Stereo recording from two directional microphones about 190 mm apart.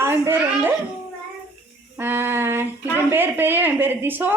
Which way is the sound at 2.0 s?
10° right (ahead or behind).